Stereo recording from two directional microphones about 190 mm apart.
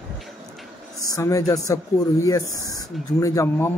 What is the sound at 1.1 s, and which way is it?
Speech, 15° left (ahead or behind).